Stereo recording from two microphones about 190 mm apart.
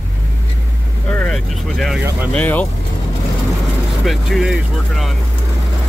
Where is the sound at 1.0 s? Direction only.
Centre (ahead or behind).